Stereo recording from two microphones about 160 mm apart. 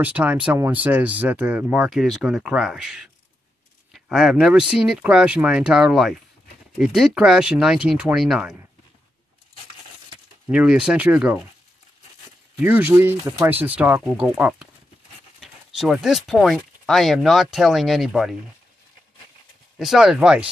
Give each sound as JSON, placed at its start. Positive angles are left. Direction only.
{"t": 0.0, "sound": "speech", "side_deg": -10}
{"t": 10.5, "sound": "speech", "side_deg": -5}
{"t": 12.5, "sound": "speech", "side_deg": -10}
{"t": 19.8, "sound": "speech", "side_deg": 0}